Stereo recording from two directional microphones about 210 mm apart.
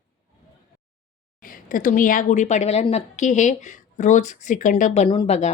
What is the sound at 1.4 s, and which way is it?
A woman's voice, 40° left (ahead or behind).